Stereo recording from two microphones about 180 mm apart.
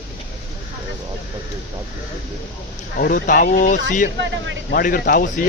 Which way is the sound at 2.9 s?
50° left (ahead or behind).